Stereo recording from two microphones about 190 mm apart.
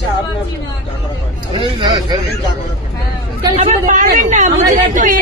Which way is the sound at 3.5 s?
40° right (ahead or behind).